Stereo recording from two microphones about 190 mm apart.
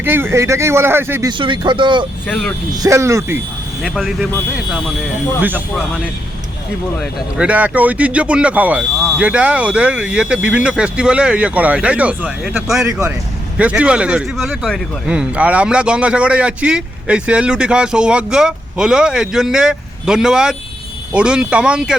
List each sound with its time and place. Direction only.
0.0 s speech: 10° right (ahead or behind)
1.3 s speech: 25° right (ahead or behind)
2.2 s speech: 10° left (ahead or behind)
2.7 s speech: 15° right (ahead or behind)
3.8 s speech: centre (ahead or behind)
7.0 s speech: 5° right (ahead or behind)
12.8 s speech: 15° right (ahead or behind)